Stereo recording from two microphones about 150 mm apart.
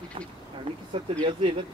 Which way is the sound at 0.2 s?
35° right (ahead or behind).